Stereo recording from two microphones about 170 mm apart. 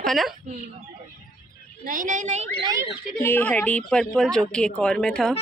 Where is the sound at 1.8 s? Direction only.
50° right (ahead or behind).